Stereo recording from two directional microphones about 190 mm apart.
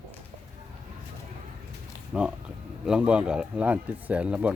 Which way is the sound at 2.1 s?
5° right (ahead or behind).